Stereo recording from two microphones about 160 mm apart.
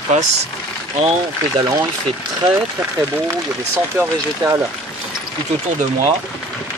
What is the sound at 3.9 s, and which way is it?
Speech, 15° right (ahead or behind).